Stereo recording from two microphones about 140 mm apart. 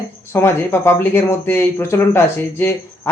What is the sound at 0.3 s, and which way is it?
Speech, 15° left (ahead or behind).